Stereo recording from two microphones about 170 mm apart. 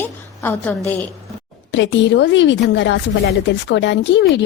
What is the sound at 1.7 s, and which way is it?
Speech, 90° left.